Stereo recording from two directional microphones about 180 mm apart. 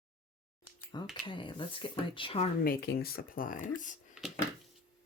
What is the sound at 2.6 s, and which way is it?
Speech, 60° left (ahead or behind).